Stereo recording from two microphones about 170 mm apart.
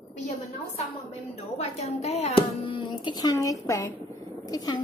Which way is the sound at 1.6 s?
40° left (ahead or behind).